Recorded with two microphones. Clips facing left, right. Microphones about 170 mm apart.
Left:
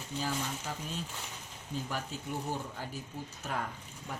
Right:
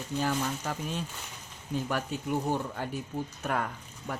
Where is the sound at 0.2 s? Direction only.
65° right (ahead or behind).